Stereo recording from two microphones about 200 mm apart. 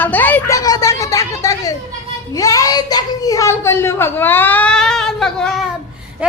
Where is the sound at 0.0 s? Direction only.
10° left (ahead or behind).